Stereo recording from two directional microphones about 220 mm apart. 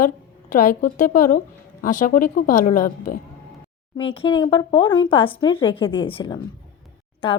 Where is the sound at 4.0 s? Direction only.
25° left (ahead or behind).